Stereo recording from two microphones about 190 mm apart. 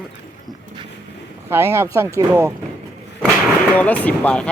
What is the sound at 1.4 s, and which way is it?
Speech, 10° right (ahead or behind).